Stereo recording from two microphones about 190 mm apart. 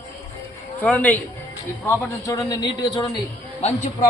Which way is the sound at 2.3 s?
20° left (ahead or behind).